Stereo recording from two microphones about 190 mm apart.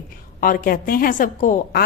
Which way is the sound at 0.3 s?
45° left (ahead or behind).